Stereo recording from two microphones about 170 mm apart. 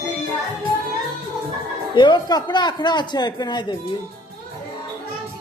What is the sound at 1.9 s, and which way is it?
Speech, 25° left (ahead or behind).